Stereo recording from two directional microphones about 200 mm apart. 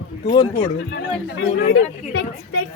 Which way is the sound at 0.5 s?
60° left (ahead or behind).